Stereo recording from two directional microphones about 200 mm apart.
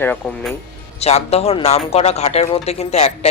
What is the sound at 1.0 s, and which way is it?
Speech, 30° left (ahead or behind).